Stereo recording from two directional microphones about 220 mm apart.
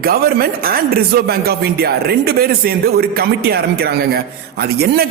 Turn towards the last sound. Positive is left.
turn(degrees=-45)  # may be behind; listen again after turning